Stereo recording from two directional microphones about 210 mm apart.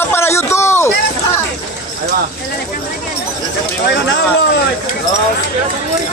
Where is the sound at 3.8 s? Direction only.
55° left (ahead or behind).